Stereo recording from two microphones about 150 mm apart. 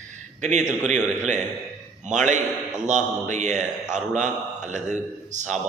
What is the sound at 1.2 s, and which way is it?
A man's voice, 55° right (ahead or behind).